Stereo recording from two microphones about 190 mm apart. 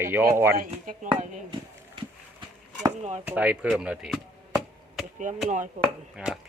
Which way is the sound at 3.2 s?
10° right (ahead or behind).